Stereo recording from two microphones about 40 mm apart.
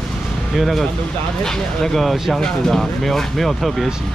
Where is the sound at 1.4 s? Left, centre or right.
Centre.